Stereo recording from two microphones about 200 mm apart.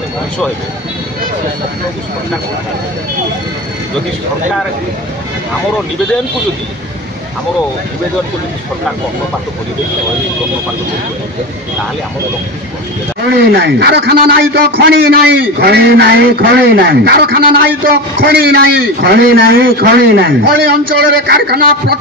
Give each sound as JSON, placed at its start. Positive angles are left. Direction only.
{"t": 13.3, "sound": "a man's voice", "side_deg": -55}